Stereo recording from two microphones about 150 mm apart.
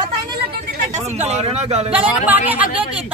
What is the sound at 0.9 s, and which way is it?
Speech, 50° right (ahead or behind).